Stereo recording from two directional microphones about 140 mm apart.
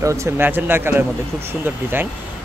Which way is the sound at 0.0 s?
20° right (ahead or behind).